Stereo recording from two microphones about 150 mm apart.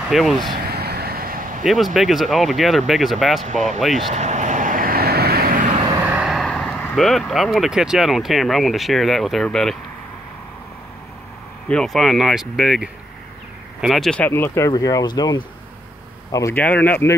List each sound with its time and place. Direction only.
0.1 s speech: centre (ahead or behind)
0.6 s vehicle: 90° right; by 1.6 s 70° right (ahead or behind)
1.6 s speech: centre (ahead or behind)
4.1 s vehicle: 50° right (ahead or behind); by 5.7 s 75° right (ahead or behind)
6.0 s speech: 5° right (ahead or behind)
11.6 s speech: 5° left (ahead or behind); by 16.5 s 20° left (ahead or behind)
16.5 s speech: 10° left (ahead or behind)